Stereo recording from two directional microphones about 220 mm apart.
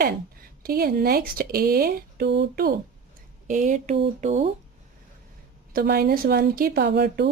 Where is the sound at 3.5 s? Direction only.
35° right (ahead or behind).